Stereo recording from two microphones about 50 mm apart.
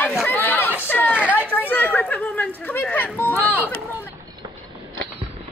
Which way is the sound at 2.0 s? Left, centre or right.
Left.